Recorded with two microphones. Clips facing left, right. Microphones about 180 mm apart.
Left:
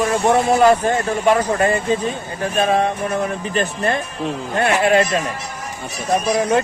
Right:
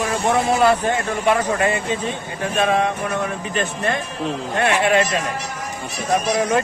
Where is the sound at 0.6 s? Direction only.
40° left (ahead or behind).